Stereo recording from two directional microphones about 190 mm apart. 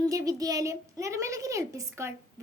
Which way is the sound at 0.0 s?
20° right (ahead or behind).